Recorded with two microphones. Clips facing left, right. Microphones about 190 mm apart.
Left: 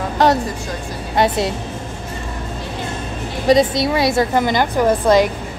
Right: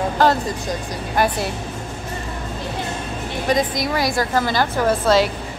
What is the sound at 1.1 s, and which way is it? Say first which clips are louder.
Speech: left 3 dB; 25° left (ahead or behind).